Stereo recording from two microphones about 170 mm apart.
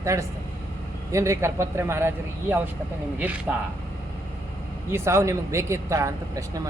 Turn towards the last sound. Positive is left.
turn(degrees=-20)  # may be behind; listen again after turning